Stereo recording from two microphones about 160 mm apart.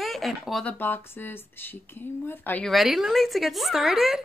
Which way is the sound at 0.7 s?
15° left (ahead or behind).